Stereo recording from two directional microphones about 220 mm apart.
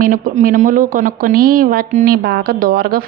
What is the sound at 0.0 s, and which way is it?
Speech, 35° right (ahead or behind).